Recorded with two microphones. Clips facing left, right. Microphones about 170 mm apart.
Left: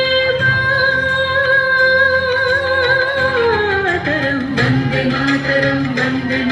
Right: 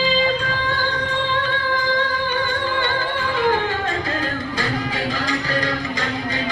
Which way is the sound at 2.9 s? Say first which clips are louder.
Left 7 dB; 65° left (ahead or behind).